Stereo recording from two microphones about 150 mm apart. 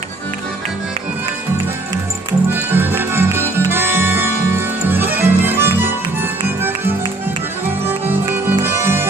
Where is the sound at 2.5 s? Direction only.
15° right (ahead or behind).